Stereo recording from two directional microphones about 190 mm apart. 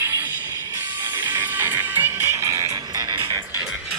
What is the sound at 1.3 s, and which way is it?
Music, 10° right (ahead or behind).